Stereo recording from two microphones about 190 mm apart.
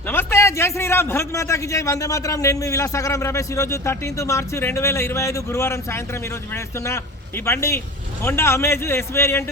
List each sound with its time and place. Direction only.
0.1 s a man's voice: 10° left (ahead or behind)